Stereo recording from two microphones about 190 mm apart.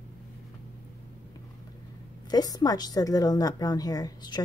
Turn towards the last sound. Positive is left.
turn(degrees=20)  # may be behind; listen again after turning